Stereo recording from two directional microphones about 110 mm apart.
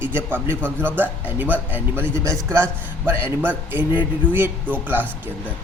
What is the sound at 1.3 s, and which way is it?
A man's voice, 15° right (ahead or behind).